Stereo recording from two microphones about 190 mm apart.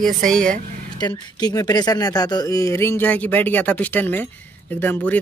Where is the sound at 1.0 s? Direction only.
20° left (ahead or behind).